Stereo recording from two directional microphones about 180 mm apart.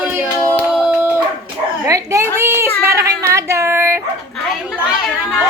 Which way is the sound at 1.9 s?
15° right (ahead or behind).